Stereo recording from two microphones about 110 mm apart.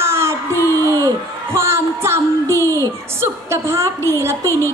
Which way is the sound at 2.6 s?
25° left (ahead or behind).